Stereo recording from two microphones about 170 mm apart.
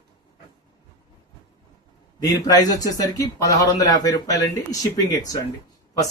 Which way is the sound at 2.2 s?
20° left (ahead or behind).